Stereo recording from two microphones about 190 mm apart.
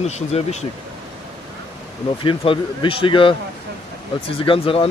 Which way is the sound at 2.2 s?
25° left (ahead or behind).